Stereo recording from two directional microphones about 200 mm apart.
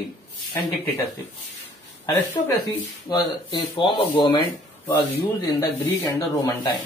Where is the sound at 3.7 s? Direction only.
25° left (ahead or behind).